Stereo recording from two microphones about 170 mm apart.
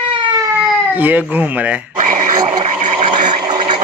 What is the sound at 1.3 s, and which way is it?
Speech, 10° right (ahead or behind).